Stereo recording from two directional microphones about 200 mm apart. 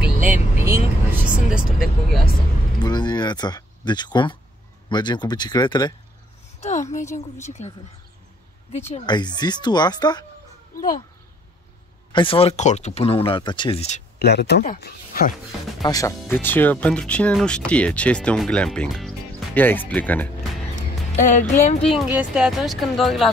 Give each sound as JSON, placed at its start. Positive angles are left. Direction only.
{"t": 0.0, "sound": "vehicle", "side_deg": -10}
{"t": 1.3, "sound": "speech", "side_deg": -5}
{"t": 2.8, "sound": "speech", "side_deg": 20}
{"t": 6.6, "sound": "a woman's voice", "side_deg": 35}
{"t": 7.4, "sound": "music", "side_deg": 35}
{"t": 9.0, "sound": "speech", "side_deg": 20}
{"t": 12.1, "sound": "speech", "side_deg": 25}
{"t": 14.1, "sound": "speech", "side_deg": 55}
{"t": 14.6, "sound": "speech", "side_deg": 45}
{"t": 15.8, "sound": "speech", "side_deg": 15}
{"t": 21.3, "sound": "music", "side_deg": 35}
{"t": 21.9, "sound": "speech", "side_deg": -5}